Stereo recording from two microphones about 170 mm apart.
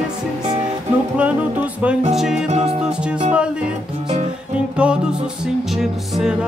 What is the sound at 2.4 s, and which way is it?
Music, 40° right (ahead or behind).